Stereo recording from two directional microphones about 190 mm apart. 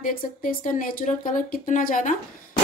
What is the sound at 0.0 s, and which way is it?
Speech, 45° left (ahead or behind).